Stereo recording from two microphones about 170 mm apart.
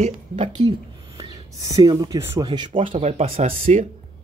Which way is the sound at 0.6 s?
30° right (ahead or behind).